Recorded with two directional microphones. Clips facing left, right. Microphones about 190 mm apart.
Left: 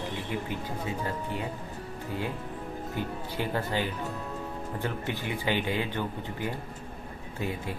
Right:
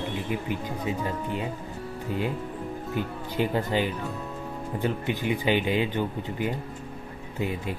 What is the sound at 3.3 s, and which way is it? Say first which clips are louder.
Speech: right 5 dB; 15° right (ahead or behind).